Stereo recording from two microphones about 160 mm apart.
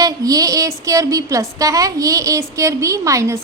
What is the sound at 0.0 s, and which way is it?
A woman's voice, 20° right (ahead or behind).